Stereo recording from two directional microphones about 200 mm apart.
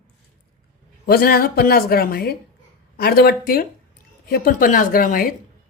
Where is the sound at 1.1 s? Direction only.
50° left (ahead or behind).